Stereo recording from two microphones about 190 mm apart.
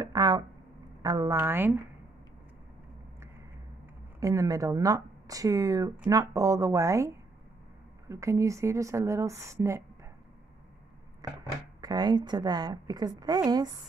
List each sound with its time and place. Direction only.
0.0 s a sound: 20° right (ahead or behind)
1.0 s speech: 20° right (ahead or behind)
4.2 s speech: 15° right (ahead or behind)
11.8 s a woman's voice: 20° right (ahead or behind)